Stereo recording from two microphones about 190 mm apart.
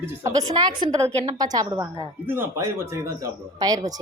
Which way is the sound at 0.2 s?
20° right (ahead or behind).